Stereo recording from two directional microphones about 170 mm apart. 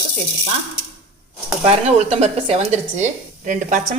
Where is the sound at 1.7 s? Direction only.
35° right (ahead or behind).